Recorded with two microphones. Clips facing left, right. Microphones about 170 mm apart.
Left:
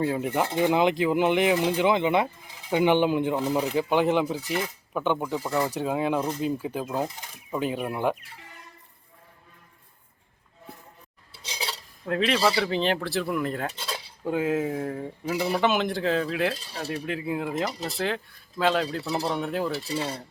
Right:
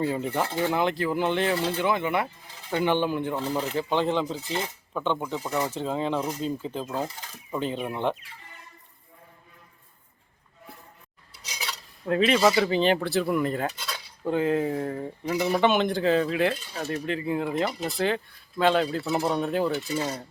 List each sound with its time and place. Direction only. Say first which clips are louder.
0.0 s speech: left 1 dB; 5° left (ahead or behind)
0.3 s speech: left 3 dB; 20° left (ahead or behind)
4.4 s speech: left 2 dB; 20° right (ahead or behind)
4.9 s speech: left 2 dB; 10° left (ahead or behind)
5.5 s speech: left 2 dB; 20° right (ahead or behind)
5.7 s speech: left 2 dB; 10° left (ahead or behind)
11.4 s cutlery: left 2 dB; 30° left (ahead or behind)
12.0 s speech: right 3 dB; centre (ahead or behind)
13.7 s cutlery: left 2 dB; 25° left (ahead or behind)
14.3 s speech: right 1 dB; 5° left (ahead or behind)
19.2 s speech: right 3 dB; 10° right (ahead or behind)
19.5 s speech: right 3 dB; centre (ahead or behind)
19.7 s cutlery: right 2 dB; 35° left (ahead or behind)
20.0 s speech: right 1 dB; 5° left (ahead or behind)